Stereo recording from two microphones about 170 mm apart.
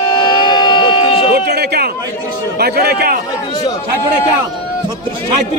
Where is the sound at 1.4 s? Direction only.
70° right (ahead or behind).